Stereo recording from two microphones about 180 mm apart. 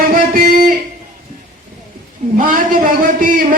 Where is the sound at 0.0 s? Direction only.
50° right (ahead or behind).